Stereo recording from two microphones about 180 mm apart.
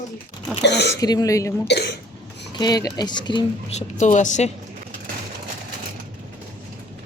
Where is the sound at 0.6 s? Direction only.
70° left (ahead or behind).